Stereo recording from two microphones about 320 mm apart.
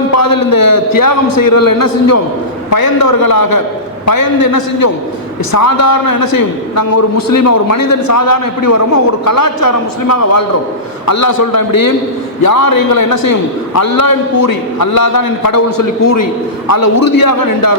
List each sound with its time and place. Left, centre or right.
0.2 s a man's voice: left
2.6 s a man's voice: left
14.4 s a man's voice: left
16.6 s a man's voice: left